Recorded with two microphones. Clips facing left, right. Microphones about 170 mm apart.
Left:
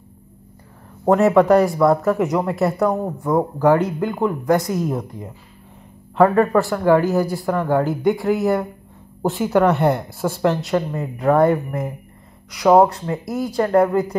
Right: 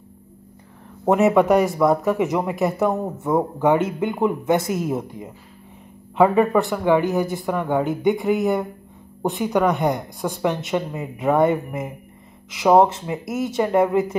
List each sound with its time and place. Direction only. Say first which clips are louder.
1.0 s speech: left 2 dB; centre (ahead or behind)